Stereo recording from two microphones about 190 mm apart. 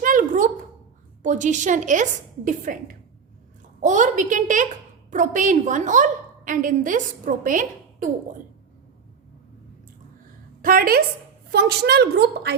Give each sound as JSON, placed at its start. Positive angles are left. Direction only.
{"t": 0.0, "sound": "a sound", "side_deg": -45}
{"t": 1.2, "sound": "a woman's voice", "side_deg": -40}
{"t": 10.6, "sound": "a woman's voice", "side_deg": -50}